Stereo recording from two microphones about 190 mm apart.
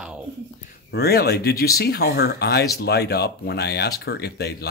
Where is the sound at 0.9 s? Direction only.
55° left (ahead or behind).